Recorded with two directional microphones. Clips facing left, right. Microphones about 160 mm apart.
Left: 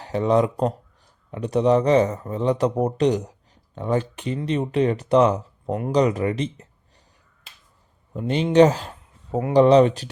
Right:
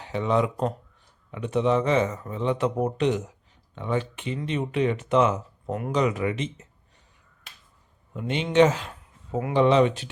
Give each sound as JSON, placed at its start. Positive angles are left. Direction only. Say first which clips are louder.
{"t": 0.0, "sound": "a man's voice", "louder": "left 5 dB", "side_deg": 40}
{"t": 8.1, "sound": "a man's voice", "louder": "left 5 dB", "side_deg": 35}